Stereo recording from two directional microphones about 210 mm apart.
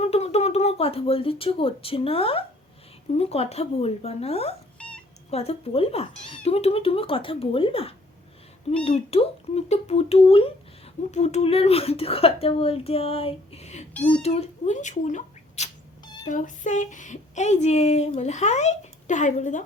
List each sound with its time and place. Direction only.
0.0 s speech: 30° left (ahead or behind)